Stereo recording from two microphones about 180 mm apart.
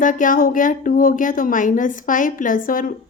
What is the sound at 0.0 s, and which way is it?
A woman's voice, 45° left (ahead or behind).